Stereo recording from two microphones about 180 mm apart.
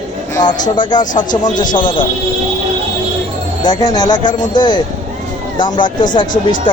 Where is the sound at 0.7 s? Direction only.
25° left (ahead or behind).